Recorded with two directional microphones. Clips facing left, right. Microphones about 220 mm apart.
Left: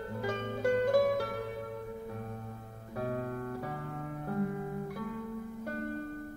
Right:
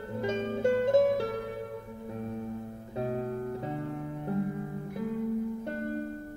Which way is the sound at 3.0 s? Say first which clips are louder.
Right 3 dB; 25° right (ahead or behind).